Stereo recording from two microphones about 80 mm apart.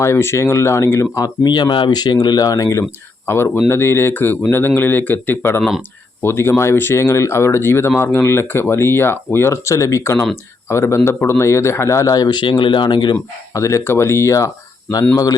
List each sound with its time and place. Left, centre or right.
0.0 s speech: left
1.5 s speech: left
3.2 s speech: left
13.5 s speech: left